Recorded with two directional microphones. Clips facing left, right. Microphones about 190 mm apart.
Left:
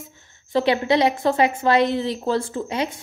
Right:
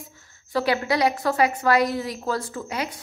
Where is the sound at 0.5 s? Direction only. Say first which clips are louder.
Left 4 dB; 25° left (ahead or behind).